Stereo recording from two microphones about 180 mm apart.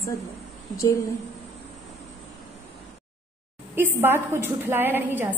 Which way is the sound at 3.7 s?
15° right (ahead or behind).